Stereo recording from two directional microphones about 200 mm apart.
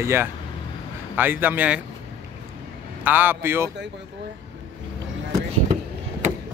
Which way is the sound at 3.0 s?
10° right (ahead or behind).